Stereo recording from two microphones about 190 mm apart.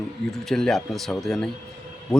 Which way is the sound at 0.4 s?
Centre (ahead or behind).